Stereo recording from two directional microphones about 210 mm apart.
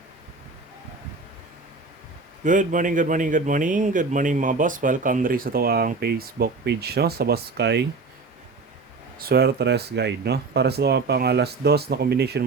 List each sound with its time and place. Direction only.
2.4 s speech: 40° right (ahead or behind); by 7.9 s 55° right (ahead or behind)
9.1 s speech: 45° right (ahead or behind)